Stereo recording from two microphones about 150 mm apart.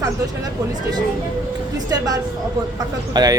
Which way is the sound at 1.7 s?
25° right (ahead or behind).